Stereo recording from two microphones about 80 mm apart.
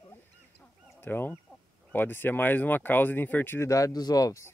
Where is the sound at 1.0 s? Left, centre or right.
Left.